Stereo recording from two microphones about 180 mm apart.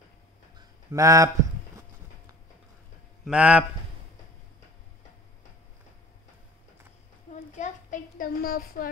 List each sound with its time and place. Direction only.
0.6 s a sound: 20° right (ahead or behind)
3.3 s a man's voice: 5° right (ahead or behind)
7.3 s a woman's voice: 45° left (ahead or behind)